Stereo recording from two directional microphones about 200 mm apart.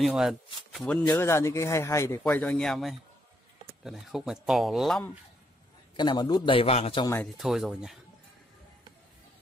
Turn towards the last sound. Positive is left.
turn(degrees=0)  # may be behind; listen again after turning